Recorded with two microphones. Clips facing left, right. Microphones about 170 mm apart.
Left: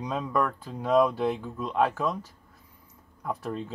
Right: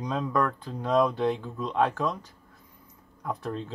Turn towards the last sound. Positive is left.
turn(degrees=5)  # may be behind; listen again after turning